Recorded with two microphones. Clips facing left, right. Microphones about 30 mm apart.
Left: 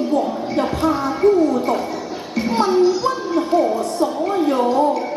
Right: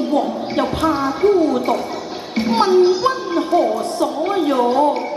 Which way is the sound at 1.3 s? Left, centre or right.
Right.